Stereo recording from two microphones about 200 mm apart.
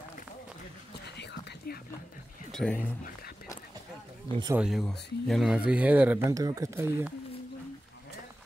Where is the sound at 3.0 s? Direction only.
50° left (ahead or behind).